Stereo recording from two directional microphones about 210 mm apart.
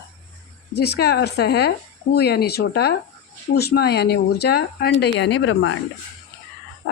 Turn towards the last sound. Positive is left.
turn(degrees=60)  # may be behind; listen again after turning